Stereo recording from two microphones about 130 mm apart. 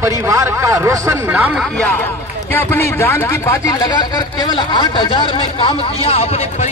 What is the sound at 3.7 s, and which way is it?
Speech, 35° left (ahead or behind).